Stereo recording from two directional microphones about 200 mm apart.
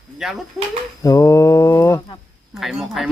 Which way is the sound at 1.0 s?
15° left (ahead or behind).